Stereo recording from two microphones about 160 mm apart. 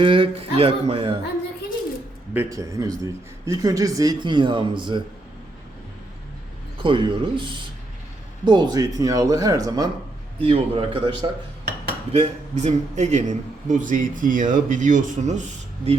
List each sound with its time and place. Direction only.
0.0 s speech: 35° right (ahead or behind)
2.3 s a man's voice: 15° right (ahead or behind)
6.8 s a man's voice: 30° right (ahead or behind)
10.4 s speech: 35° right (ahead or behind)
12.1 s a man's voice: 45° right (ahead or behind)